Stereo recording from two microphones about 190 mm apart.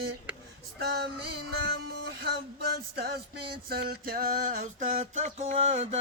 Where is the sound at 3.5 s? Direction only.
55° right (ahead or behind).